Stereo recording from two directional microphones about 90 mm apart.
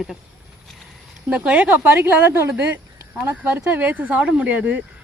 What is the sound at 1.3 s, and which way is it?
Speech, 15° right (ahead or behind).